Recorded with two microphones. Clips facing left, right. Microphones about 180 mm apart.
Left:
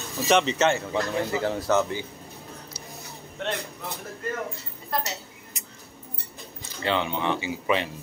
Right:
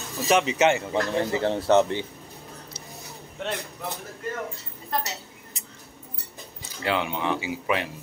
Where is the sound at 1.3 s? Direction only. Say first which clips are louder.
Right 4 dB; 30° right (ahead or behind).